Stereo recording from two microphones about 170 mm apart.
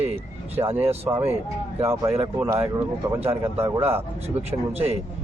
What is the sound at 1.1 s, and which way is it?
A man's voice, 10° right (ahead or behind).